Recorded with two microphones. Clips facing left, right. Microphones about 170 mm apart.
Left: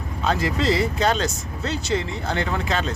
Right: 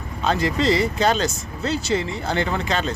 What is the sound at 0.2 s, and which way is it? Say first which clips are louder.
Speech: right 2 dB; centre (ahead or behind).